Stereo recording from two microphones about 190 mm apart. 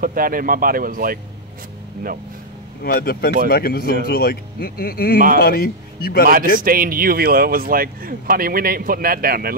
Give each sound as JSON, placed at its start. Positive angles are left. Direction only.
{"t": 0.0, "sound": "speech", "side_deg": -50}
{"t": 2.8, "sound": "speech", "side_deg": 55}
{"t": 6.2, "sound": "speech", "side_deg": -45}